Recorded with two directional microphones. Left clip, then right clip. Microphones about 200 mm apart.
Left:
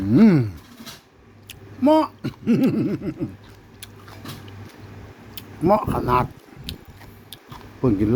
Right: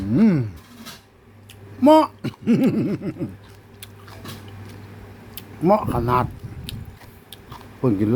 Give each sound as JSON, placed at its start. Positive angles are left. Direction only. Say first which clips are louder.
{"t": 0.1, "sound": "speech", "louder": "left 3 dB", "side_deg": 20}
{"t": 1.8, "sound": "speech", "louder": "right 4 dB", "side_deg": -15}
{"t": 5.3, "sound": "speech", "louder": "even", "side_deg": -5}
{"t": 6.7, "sound": "gears", "louder": "left 1 dB", "side_deg": 0}
{"t": 7.3, "sound": "a sound", "louder": "right 1 dB", "side_deg": -5}